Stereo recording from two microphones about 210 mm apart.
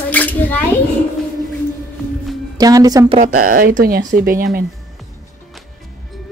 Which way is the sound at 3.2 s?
40° right (ahead or behind).